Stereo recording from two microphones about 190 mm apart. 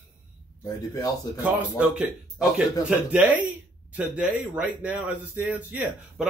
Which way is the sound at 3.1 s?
10° right (ahead or behind).